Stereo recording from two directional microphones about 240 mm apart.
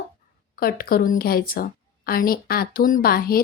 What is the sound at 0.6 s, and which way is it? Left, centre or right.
A woman's voice, left.